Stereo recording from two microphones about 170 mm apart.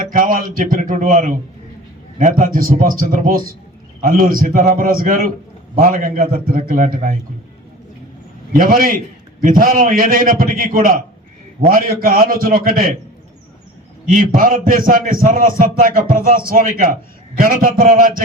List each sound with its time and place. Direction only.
0.0 s a man's voice: 55° right (ahead or behind)
8.5 s a man's voice: 55° right (ahead or behind)
14.1 s a man's voice: 55° right (ahead or behind)